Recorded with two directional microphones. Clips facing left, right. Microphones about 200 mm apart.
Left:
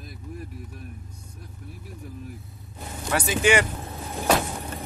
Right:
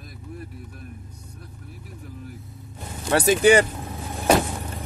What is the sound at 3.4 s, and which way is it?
Speech, 35° right (ahead or behind).